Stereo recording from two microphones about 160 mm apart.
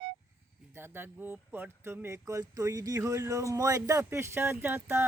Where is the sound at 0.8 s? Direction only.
15° right (ahead or behind).